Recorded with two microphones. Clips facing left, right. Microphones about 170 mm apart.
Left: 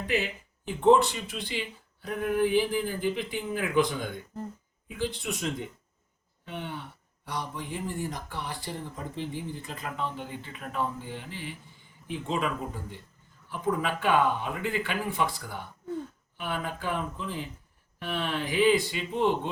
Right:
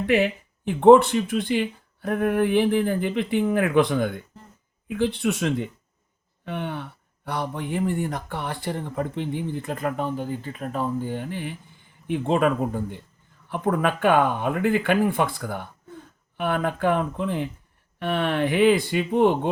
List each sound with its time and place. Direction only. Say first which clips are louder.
0.0 s speech: right 9 dB; 60° right (ahead or behind)